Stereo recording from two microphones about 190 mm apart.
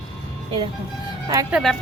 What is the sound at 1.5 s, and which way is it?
Speech, centre (ahead or behind).